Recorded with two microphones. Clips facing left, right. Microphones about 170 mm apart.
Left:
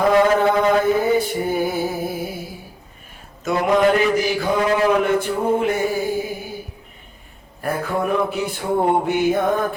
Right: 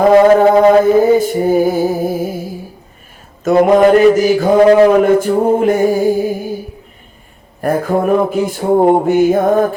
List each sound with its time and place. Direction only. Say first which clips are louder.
0.0 s mantra: right 8 dB; 45° right (ahead or behind)
1.5 s music: right 9 dB; 45° right (ahead or behind)
3.4 s a man's voice: right 8 dB; 45° right (ahead or behind)
7.6 s a man's voice: right 8 dB; 45° right (ahead or behind)